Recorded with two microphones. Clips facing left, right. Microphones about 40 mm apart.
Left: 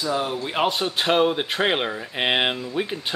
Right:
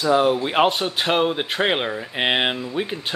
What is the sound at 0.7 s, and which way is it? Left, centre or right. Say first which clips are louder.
Speech: even; centre.